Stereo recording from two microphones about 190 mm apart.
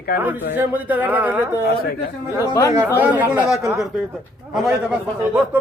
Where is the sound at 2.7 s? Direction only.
10° right (ahead or behind).